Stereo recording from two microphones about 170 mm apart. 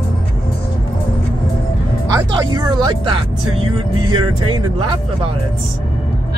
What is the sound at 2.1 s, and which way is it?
Speech, 25° right (ahead or behind).